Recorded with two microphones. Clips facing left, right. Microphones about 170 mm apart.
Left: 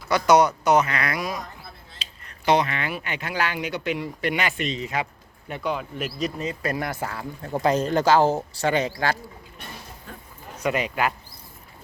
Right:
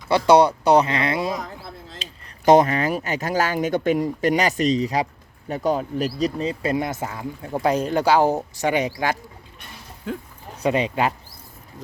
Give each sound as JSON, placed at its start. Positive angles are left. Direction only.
{"t": 0.1, "sound": "speech", "side_deg": -30}
{"t": 1.4, "sound": "a sound", "side_deg": -90}
{"t": 2.0, "sound": "speech", "side_deg": -45}
{"t": 10.1, "sound": "speech", "side_deg": -90}
{"t": 10.6, "sound": "speech", "side_deg": -30}